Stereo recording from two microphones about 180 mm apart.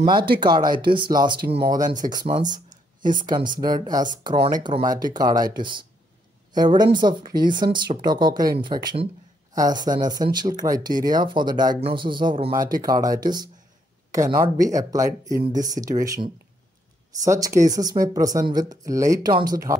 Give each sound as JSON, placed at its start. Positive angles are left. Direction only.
{"t": 0.0, "sound": "speech", "side_deg": -25}
{"t": 3.6, "sound": "speech", "side_deg": -20}